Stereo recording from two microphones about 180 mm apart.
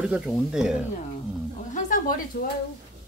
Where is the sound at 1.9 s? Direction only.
45° left (ahead or behind).